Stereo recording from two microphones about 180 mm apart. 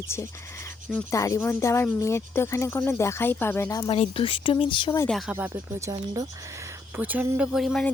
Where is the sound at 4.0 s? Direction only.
30° left (ahead or behind).